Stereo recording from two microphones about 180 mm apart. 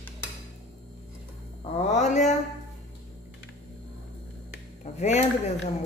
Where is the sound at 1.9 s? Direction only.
40° left (ahead or behind).